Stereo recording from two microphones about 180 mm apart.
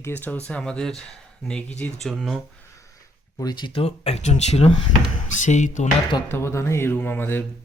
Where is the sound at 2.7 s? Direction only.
15° left (ahead or behind); by 5.9 s 40° left (ahead or behind).